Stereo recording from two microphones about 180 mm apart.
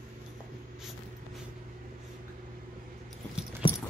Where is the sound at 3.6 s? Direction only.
25° left (ahead or behind).